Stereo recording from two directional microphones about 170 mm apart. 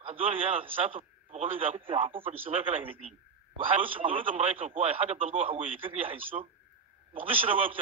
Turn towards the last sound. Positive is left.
turn(degrees=-30)  # may be behind; listen again after turning